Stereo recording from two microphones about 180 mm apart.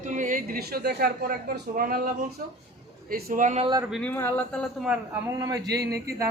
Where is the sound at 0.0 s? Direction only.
45° right (ahead or behind).